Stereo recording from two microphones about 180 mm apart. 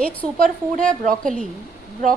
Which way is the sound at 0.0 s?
5° left (ahead or behind).